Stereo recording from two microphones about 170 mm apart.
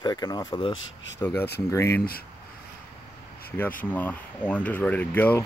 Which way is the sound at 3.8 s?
10° left (ahead or behind).